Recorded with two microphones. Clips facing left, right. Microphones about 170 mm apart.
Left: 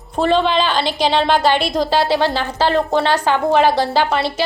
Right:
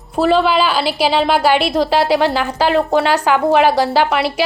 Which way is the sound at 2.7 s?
5° right (ahead or behind).